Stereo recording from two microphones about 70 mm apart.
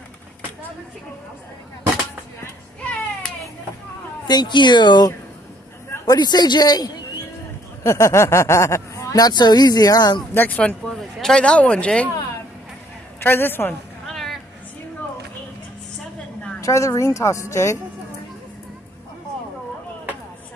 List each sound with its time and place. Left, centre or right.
4.3 s speech: left
6.0 s speech: left
7.8 s speech: left
9.1 s speech: left
10.3 s speech: left
10.9 s speech: centre
13.2 s a woman's voice: left
14.0 s a sound: centre
16.6 s speech: left